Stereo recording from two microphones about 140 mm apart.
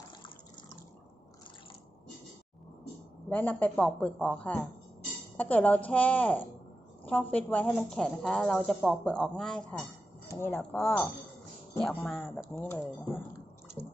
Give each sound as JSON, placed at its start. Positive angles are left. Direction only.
{"t": 3.2, "sound": "a woman's voice", "side_deg": 10}
{"t": 10.2, "sound": "a woman's voice", "side_deg": 15}
{"t": 12.5, "sound": "speech", "side_deg": 15}